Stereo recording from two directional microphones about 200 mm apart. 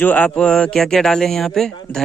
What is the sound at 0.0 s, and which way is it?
Speech, 10° left (ahead or behind).